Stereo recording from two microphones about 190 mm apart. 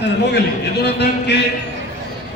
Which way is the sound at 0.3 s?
60° left (ahead or behind).